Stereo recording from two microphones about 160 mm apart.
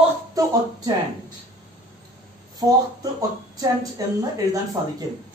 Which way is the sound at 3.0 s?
20° right (ahead or behind).